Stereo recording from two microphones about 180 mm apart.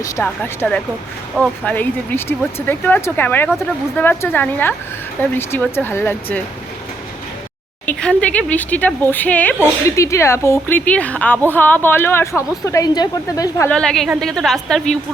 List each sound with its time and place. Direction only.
0.0 s a woman's voice: 10° left (ahead or behind)
7.9 s a woman's voice: 5° left (ahead or behind)
13.7 s a woman's voice: 5° left (ahead or behind)